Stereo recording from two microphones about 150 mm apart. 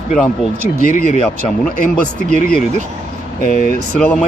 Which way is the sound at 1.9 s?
10° left (ahead or behind).